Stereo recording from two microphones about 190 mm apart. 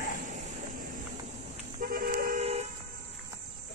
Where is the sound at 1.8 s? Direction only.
50° right (ahead or behind).